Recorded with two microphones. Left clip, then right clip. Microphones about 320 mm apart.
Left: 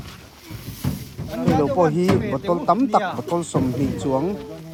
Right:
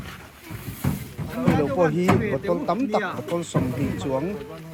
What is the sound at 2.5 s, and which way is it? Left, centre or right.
Speech, centre.